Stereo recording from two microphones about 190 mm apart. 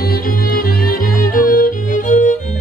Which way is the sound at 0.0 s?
50° left (ahead or behind).